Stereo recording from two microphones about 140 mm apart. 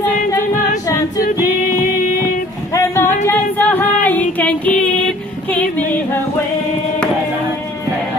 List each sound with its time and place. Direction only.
2.7 s singing: 20° left (ahead or behind)
3.3 s music: 15° left (ahead or behind)
5.5 s female singing: 10° left (ahead or behind)